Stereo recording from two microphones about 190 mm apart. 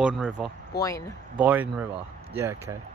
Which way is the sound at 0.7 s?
15° left (ahead or behind).